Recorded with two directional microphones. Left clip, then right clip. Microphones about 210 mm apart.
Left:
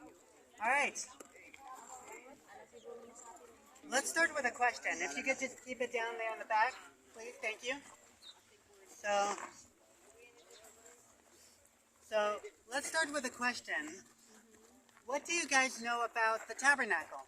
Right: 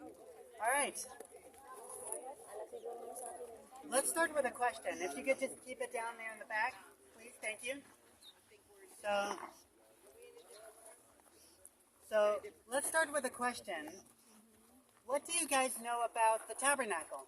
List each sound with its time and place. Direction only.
0.6 s speech: 10° right (ahead or behind)
3.8 s speech: centre (ahead or behind)
9.0 s a sound: 10° right (ahead or behind)
12.0 s speech: 15° right (ahead or behind)
15.0 s speech: 10° right (ahead or behind)